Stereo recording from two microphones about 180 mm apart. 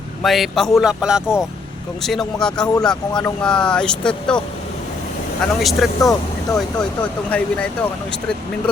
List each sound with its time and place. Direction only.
0.2 s speech: centre (ahead or behind)
5.5 s speech: centre (ahead or behind)
6.0 s speech: 20° left (ahead or behind)
7.3 s speech: 5° left (ahead or behind)